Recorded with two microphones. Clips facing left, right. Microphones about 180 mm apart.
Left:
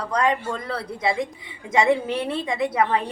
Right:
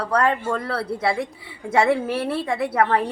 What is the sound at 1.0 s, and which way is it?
A woman's voice, 15° left (ahead or behind).